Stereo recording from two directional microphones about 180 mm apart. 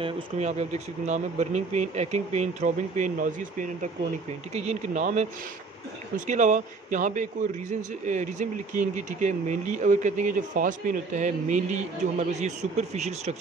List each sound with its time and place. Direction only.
0.0 s speech: 35° right (ahead or behind)